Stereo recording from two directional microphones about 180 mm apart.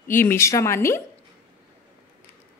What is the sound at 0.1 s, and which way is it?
Speech, 15° left (ahead or behind).